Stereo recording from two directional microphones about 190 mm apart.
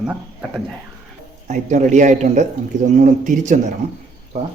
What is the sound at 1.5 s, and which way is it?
A man's voice, 40° right (ahead or behind).